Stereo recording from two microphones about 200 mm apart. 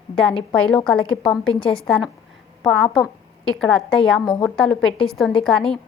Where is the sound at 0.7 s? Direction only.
5° left (ahead or behind).